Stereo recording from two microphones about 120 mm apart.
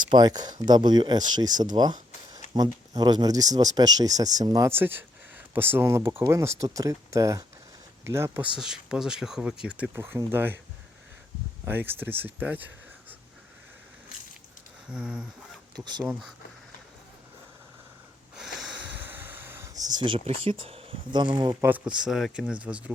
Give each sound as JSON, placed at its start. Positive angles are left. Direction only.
{"t": 0.0, "sound": "speech", "side_deg": -40}
{"t": 1.7, "sound": "a sound", "side_deg": -35}
{"t": 2.9, "sound": "speech", "side_deg": -35}
{"t": 4.7, "sound": "speech", "side_deg": -15}
{"t": 8.5, "sound": "speech", "side_deg": -5}
{"t": 9.9, "sound": "speech", "side_deg": -20}
{"t": 11.6, "sound": "speech", "side_deg": -15}
{"t": 14.8, "sound": "speech", "side_deg": -10}
{"t": 15.8, "sound": "speech", "side_deg": -35}
{"t": 18.3, "sound": "sniff", "side_deg": 0}
{"t": 18.9, "sound": "a sound", "side_deg": -15}
{"t": 20.1, "sound": "speech", "side_deg": -50}
{"t": 21.5, "sound": "speech", "side_deg": -15}
{"t": 21.9, "sound": "speech", "side_deg": -5}